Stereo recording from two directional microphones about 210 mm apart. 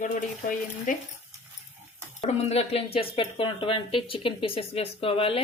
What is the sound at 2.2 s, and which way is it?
Speech, 30° left (ahead or behind).